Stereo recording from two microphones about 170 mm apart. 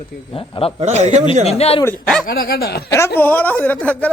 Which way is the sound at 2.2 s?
65° left (ahead or behind).